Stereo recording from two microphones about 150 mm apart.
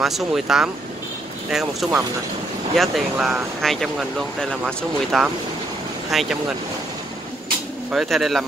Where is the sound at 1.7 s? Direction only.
Centre (ahead or behind).